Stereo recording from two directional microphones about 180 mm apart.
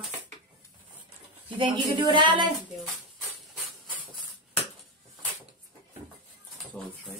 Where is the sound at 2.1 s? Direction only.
25° right (ahead or behind).